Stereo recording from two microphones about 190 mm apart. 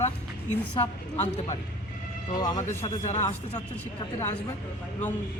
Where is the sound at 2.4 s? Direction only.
25° left (ahead or behind).